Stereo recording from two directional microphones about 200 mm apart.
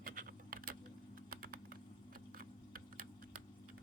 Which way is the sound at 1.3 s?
45° right (ahead or behind).